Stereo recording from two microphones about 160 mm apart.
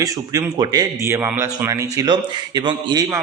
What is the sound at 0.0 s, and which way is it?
Speech, 20° right (ahead or behind).